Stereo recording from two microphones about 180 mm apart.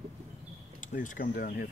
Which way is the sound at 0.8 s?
45° left (ahead or behind).